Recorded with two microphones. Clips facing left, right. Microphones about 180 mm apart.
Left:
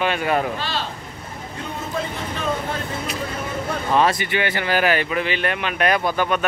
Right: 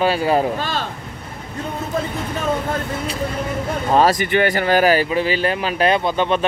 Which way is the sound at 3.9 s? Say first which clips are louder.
Right 4 dB; 40° right (ahead or behind).